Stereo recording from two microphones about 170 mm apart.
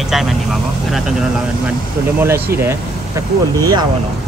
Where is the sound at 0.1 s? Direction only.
Centre (ahead or behind).